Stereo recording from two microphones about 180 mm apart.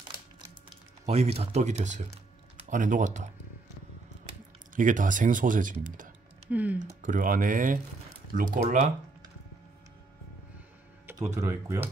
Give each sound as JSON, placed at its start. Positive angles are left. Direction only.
{"t": 1.0, "sound": "speech", "side_deg": -35}
{"t": 4.3, "sound": "a sound", "side_deg": -45}
{"t": 6.5, "sound": "speech", "side_deg": -10}
{"t": 6.8, "sound": "speech", "side_deg": -45}
{"t": 11.3, "sound": "speech", "side_deg": -15}